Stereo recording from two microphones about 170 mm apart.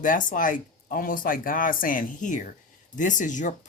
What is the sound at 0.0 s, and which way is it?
Speech, 50° left (ahead or behind).